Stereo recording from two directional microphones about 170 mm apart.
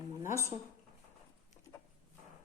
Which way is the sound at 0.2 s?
15° right (ahead or behind).